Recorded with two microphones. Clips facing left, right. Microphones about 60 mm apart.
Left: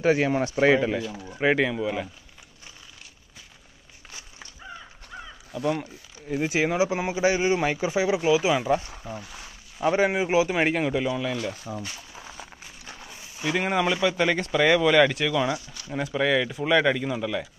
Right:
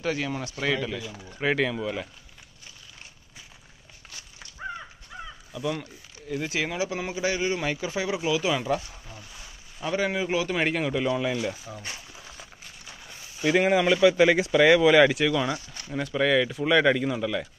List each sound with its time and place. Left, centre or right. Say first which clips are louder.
0.0 s speech: left 7 dB; left
1.4 s a man's voice: left 3 dB; centre
4.6 s crow: right 7 dB; right
5.8 s speech: left 4 dB; left
8.8 s speech: left 8 dB; left
9.8 s a man's voice: left 5 dB; left; by 11.1 s centre
11.1 s speech: right 1 dB; centre
13.6 s speech: right 4 dB; centre